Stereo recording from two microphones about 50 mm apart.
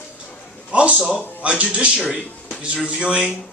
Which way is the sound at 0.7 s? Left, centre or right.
Right.